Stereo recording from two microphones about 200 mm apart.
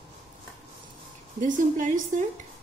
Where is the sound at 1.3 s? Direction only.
40° right (ahead or behind).